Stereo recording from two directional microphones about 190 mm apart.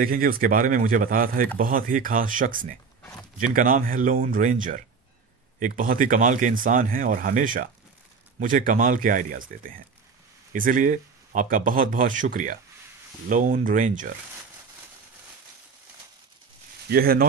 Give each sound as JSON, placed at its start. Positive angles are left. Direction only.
{"t": 0.0, "sound": "speech", "side_deg": -50}
{"t": 16.9, "sound": "speech", "side_deg": -50}